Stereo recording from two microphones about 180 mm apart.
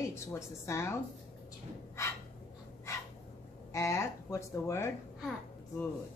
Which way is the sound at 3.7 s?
15° left (ahead or behind).